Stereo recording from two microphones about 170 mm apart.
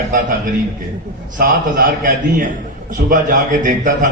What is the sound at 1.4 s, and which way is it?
A man's voice, 60° right (ahead or behind).